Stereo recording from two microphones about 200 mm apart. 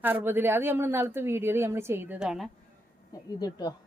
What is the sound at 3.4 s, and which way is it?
Speech, 20° left (ahead or behind).